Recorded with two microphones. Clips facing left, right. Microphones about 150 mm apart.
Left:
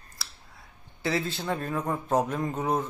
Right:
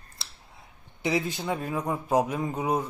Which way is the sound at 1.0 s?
15° right (ahead or behind).